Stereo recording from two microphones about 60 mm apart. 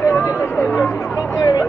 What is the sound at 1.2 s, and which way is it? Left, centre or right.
Music, left.